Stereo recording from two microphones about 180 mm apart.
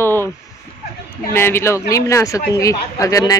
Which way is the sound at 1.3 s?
15° left (ahead or behind).